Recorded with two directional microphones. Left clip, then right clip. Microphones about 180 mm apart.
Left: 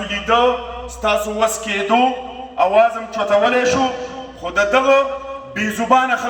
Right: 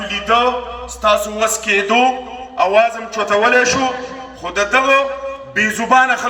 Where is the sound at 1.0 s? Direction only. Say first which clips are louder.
Right 2 dB; 35° right (ahead or behind).